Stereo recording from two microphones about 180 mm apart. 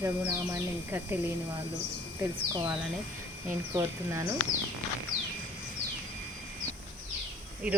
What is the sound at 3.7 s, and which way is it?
Speech, 15° right (ahead or behind).